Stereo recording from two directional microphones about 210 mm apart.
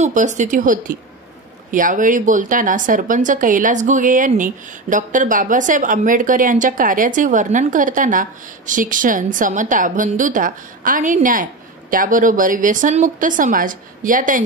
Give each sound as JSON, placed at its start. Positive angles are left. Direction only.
{"t": 0.0, "sound": "a woman's voice", "side_deg": -35}